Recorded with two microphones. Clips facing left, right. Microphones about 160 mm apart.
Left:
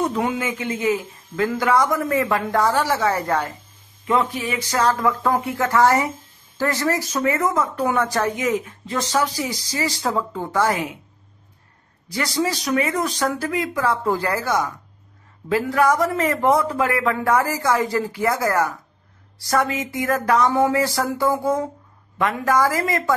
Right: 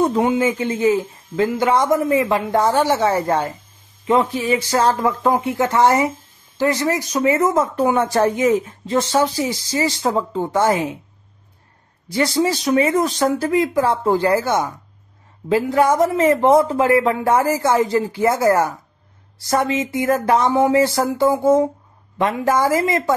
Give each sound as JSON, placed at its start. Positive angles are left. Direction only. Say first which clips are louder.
{"t": 0.0, "sound": "speech", "louder": "right 6 dB", "side_deg": -25}
{"t": 12.1, "sound": "speech", "louder": "right 5 dB", "side_deg": -25}